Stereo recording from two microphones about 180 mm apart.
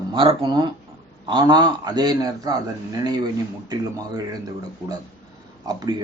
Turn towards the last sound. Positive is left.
turn(degrees=-20)  # may be behind; listen again after turning